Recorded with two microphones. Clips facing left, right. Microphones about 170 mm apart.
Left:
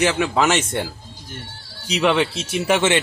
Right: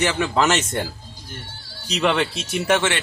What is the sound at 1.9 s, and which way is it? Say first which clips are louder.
Speech: left 2 dB; 5° left (ahead or behind).